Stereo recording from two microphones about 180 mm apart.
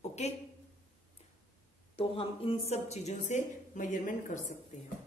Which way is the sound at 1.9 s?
30° left (ahead or behind).